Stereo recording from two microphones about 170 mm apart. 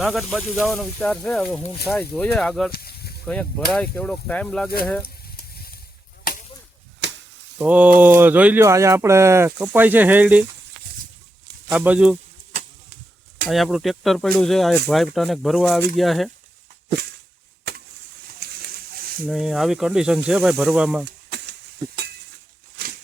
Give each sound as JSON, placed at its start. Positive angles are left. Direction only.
{"t": 0.0, "sound": "speech", "side_deg": 0}
{"t": 2.7, "sound": "snake", "side_deg": 65}
{"t": 3.7, "sound": "speech", "side_deg": 5}
{"t": 5.0, "sound": "a sound", "side_deg": 65}
{"t": 7.6, "sound": "speech", "side_deg": -5}
{"t": 11.7, "sound": "speech", "side_deg": -5}
{"t": 13.5, "sound": "speech", "side_deg": 0}
{"t": 18.3, "sound": "a sound", "side_deg": -60}
{"t": 19.2, "sound": "speech", "side_deg": 0}
{"t": 22.8, "sound": "a sound", "side_deg": -65}